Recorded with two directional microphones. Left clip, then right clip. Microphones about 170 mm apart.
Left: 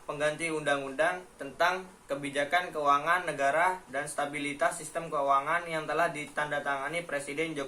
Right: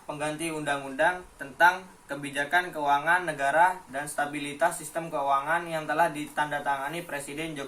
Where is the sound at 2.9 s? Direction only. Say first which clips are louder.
Right 1 dB; 20° left (ahead or behind).